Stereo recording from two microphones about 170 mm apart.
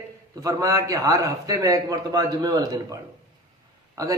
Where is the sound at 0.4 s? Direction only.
20° right (ahead or behind).